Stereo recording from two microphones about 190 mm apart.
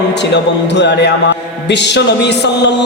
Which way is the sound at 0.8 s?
65° left (ahead or behind).